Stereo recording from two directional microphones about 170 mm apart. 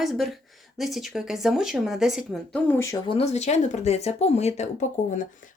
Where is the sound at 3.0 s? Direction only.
35° left (ahead or behind).